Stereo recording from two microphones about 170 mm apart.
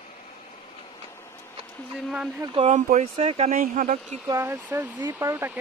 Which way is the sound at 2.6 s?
45° right (ahead or behind).